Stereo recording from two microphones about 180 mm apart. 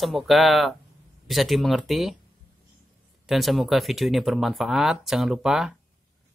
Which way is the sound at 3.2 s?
Centre (ahead or behind).